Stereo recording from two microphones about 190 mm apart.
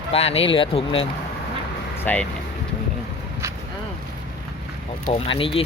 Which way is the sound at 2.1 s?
10° left (ahead or behind).